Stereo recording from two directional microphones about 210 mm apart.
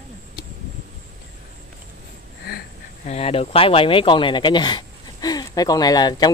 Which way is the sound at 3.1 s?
30° left (ahead or behind).